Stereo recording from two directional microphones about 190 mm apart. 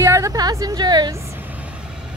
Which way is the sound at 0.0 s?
15° right (ahead or behind).